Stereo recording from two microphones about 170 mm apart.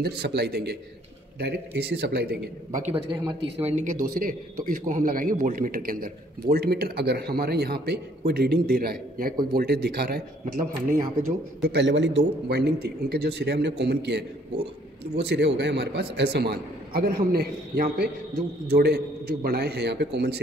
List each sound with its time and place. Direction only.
0.0 s a man's voice: 75° right (ahead or behind)
3.1 s speech: 35° right (ahead or behind)
4.0 s a man's voice: 55° right (ahead or behind)
11.7 s a man's voice: 90° right